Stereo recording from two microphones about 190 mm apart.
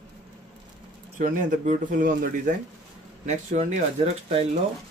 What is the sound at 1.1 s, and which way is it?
Speech, 45° right (ahead or behind).